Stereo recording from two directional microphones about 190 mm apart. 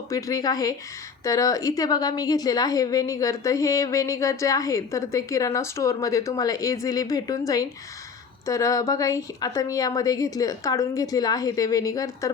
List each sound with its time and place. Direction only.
0.1 s a woman's voice: 15° left (ahead or behind)